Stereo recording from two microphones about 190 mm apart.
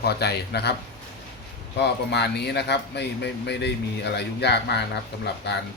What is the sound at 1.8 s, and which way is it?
Speech, 60° left (ahead or behind).